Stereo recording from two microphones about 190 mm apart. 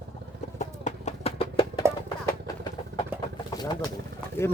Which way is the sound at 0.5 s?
40° left (ahead or behind).